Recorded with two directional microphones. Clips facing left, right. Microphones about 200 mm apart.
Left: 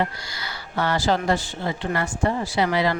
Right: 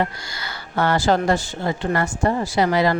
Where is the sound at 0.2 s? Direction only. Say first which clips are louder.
Right 2 dB; 50° right (ahead or behind).